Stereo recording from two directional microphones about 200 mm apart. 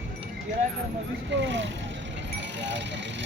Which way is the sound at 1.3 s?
65° right (ahead or behind).